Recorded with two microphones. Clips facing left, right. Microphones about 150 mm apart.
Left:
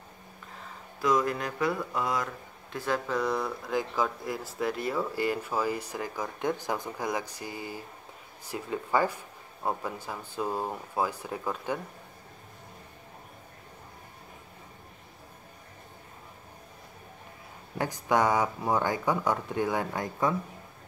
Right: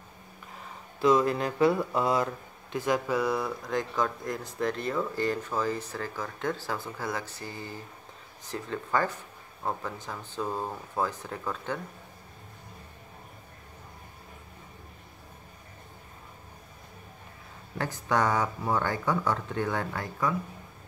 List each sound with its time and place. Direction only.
1.0 s a sound: 25° right (ahead or behind)
2.7 s speech: 15° right (ahead or behind); by 11.8 s 15° left (ahead or behind)
17.7 s speech: 15° left (ahead or behind)